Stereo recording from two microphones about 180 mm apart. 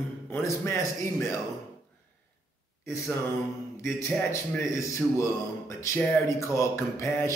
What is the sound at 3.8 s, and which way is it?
A man's voice, 15° left (ahead or behind).